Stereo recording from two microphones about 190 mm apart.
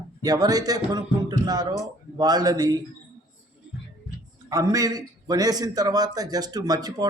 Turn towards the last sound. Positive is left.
turn(degrees=-20)  # may be behind; listen again after turning